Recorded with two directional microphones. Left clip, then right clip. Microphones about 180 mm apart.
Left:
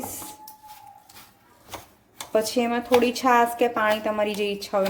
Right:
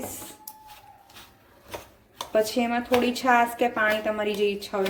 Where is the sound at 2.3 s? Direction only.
55° left (ahead or behind).